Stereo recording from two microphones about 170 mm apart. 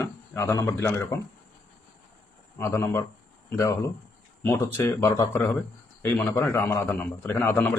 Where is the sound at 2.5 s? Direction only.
15° left (ahead or behind).